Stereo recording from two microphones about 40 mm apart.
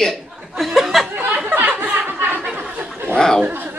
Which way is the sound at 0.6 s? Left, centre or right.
Centre.